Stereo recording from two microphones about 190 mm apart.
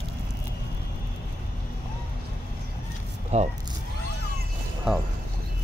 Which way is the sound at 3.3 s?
35° right (ahead or behind).